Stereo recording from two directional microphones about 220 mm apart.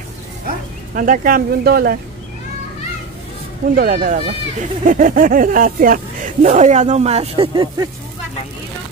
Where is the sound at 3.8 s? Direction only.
40° right (ahead or behind); by 7.8 s 20° right (ahead or behind).